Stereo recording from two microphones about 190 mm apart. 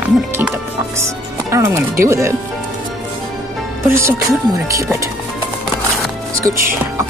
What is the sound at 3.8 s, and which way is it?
Speech, 15° right (ahead or behind).